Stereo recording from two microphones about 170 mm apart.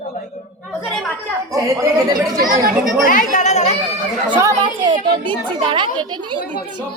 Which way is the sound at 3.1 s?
50° left (ahead or behind).